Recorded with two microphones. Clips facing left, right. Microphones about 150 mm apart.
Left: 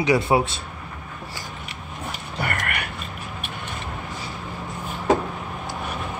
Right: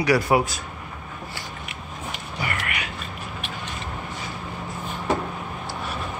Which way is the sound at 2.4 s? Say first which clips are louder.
Left 2 dB; 50° left (ahead or behind).